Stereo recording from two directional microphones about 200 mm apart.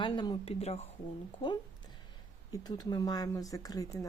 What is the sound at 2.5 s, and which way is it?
Speech, 20° left (ahead or behind).